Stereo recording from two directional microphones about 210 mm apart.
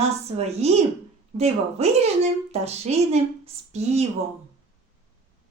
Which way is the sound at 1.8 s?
30° right (ahead or behind).